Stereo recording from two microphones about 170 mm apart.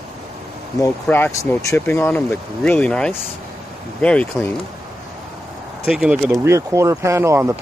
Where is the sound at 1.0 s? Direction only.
10° left (ahead or behind).